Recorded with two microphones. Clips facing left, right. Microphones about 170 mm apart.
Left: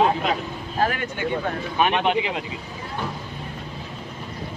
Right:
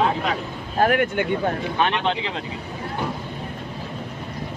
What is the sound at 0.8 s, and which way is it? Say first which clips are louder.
Speech: right 5 dB; 55° right (ahead or behind).